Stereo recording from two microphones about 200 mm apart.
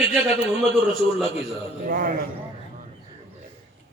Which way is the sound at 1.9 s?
45° right (ahead or behind).